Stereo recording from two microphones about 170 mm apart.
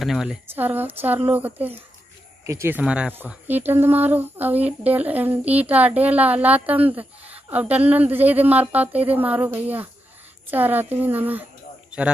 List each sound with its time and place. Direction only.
0.0 s speech: centre (ahead or behind)